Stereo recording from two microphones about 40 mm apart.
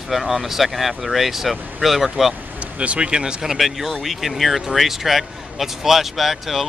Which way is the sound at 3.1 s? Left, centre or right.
Centre.